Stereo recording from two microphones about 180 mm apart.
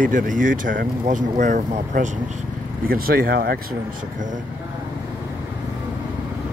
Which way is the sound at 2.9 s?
55° right (ahead or behind).